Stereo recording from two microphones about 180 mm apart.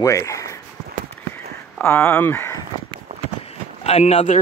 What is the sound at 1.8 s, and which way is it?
Speech, 10° left (ahead or behind).